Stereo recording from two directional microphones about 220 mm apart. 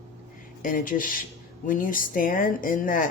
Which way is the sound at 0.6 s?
40° left (ahead or behind).